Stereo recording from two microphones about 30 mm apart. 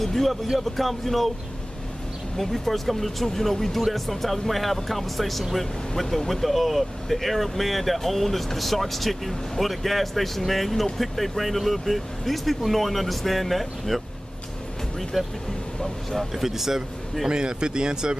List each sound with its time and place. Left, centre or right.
0.0 s speech: centre
2.3 s speech: centre
15.1 s speech: centre
15.8 s speech: centre
16.3 s speech: centre
17.3 s speech: right